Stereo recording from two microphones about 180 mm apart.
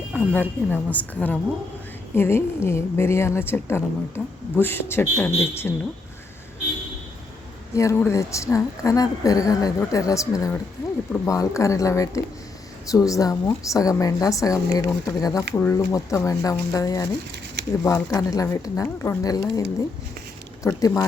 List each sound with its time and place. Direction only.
0.1 s a woman's voice: 10° left (ahead or behind)
7.7 s a woman's voice: 15° left (ahead or behind)
20.7 s a woman's voice: 15° left (ahead or behind)